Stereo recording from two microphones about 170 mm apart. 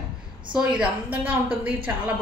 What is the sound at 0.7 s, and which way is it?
Speech, 5° right (ahead or behind).